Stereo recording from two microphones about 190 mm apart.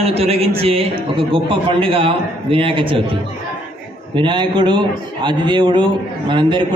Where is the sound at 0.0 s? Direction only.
30° right (ahead or behind).